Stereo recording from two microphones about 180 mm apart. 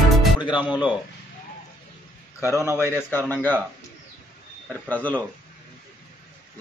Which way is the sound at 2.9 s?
10° left (ahead or behind).